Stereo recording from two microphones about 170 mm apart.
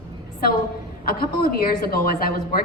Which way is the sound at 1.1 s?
60° left (ahead or behind).